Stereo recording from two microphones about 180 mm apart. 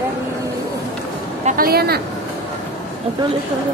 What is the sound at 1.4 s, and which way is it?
Speech, 55° right (ahead or behind).